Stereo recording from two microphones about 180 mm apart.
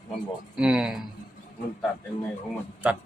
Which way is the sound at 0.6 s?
5° right (ahead or behind).